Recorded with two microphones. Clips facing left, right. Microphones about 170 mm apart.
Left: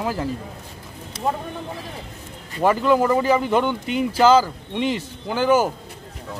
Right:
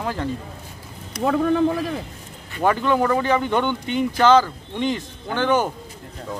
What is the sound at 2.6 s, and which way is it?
Speech, 5° left (ahead or behind).